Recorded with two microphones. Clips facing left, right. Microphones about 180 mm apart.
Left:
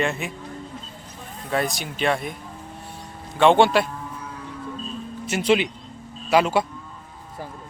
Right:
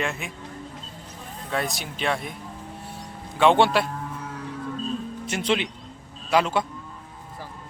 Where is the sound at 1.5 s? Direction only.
Centre (ahead or behind).